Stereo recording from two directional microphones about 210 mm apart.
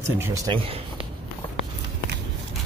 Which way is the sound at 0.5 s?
20° right (ahead or behind).